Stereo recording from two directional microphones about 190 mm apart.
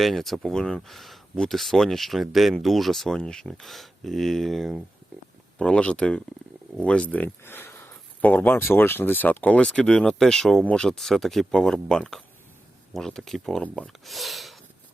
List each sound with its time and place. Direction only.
0.0 s speech: centre (ahead or behind)